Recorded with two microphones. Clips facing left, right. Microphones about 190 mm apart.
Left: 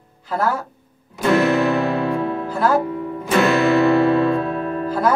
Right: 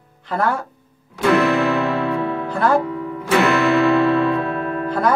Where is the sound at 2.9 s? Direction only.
65° right (ahead or behind).